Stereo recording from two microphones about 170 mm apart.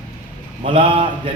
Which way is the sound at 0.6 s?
30° right (ahead or behind).